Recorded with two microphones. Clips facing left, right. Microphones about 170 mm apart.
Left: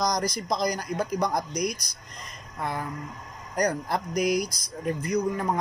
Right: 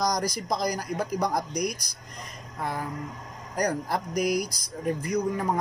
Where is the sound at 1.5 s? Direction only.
55° right (ahead or behind).